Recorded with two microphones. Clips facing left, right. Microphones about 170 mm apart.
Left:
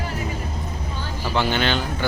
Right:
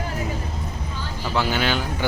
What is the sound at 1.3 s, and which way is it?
Speech, 5° right (ahead or behind).